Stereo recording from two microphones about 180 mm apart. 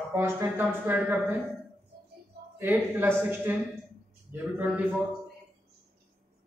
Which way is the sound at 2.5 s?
10° right (ahead or behind).